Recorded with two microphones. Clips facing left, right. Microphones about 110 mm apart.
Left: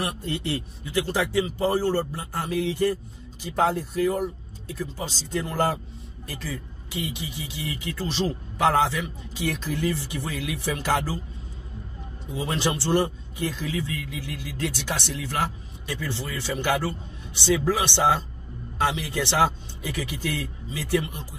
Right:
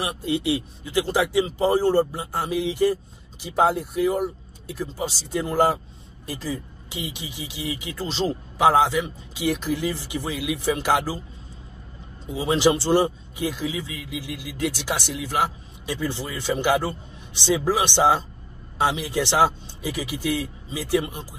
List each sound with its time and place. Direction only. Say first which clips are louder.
0.0 s speech: right 4 dB; 10° right (ahead or behind)
12.3 s a man's voice: right 7 dB; 20° right (ahead or behind)